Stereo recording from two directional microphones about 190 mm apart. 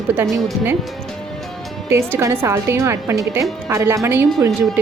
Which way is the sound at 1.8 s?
15° right (ahead or behind).